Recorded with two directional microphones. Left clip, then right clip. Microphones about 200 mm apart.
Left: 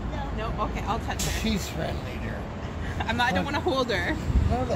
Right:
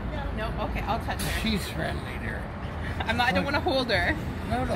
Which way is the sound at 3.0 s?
25° right (ahead or behind).